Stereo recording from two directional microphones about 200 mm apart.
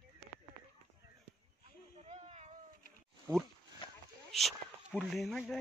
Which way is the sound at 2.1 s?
35° right (ahead or behind).